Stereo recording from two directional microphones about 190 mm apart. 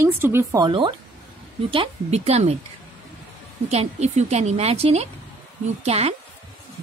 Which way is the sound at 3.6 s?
35° right (ahead or behind).